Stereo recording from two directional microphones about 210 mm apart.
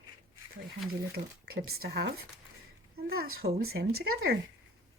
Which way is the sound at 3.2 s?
50° right (ahead or behind).